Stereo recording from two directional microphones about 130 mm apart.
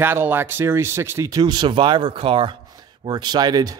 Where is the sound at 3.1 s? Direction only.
35° right (ahead or behind).